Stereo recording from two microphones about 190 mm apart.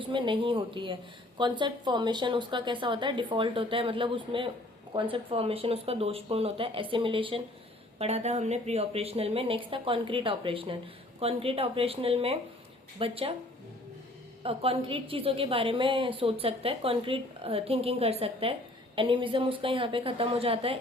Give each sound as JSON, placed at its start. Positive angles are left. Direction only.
{"t": 0.0, "sound": "a woman's voice", "side_deg": -25}
{"t": 14.4, "sound": "a woman's voice", "side_deg": -30}